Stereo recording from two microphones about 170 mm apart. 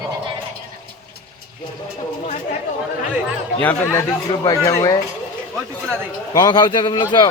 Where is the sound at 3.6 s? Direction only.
20° left (ahead or behind).